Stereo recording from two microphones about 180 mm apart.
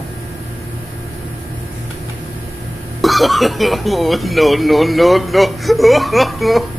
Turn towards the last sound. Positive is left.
turn(degrees=0)  # may be behind; listen again after turning